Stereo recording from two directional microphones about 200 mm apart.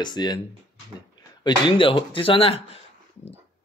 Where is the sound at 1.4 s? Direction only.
25° left (ahead or behind).